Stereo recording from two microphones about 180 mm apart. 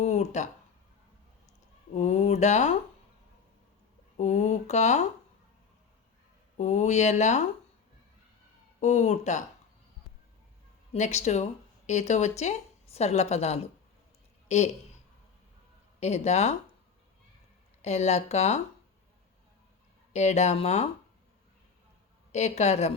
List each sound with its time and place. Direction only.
0.0 s speech: 40° left (ahead or behind)
1.9 s a woman's voice: 40° left (ahead or behind)
4.2 s a woman's voice: 40° left (ahead or behind)
6.6 s a woman's voice: 40° left (ahead or behind)
8.8 s a woman's voice: 40° left (ahead or behind)
10.9 s a woman's voice: 40° left (ahead or behind)
16.0 s a woman's voice: 35° left (ahead or behind)
17.8 s a woman's voice: 35° left (ahead or behind)
20.1 s a woman's voice: 40° left (ahead or behind)
22.3 s a woman's voice: 40° left (ahead or behind)